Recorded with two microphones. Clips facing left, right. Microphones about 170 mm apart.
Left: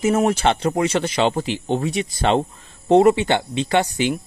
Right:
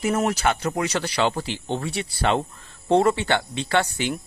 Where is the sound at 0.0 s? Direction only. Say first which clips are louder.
Left 4 dB; 25° left (ahead or behind).